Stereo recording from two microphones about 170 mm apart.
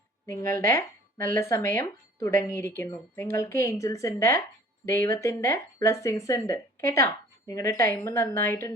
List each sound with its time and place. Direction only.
0.3 s speech: 15° left (ahead or behind)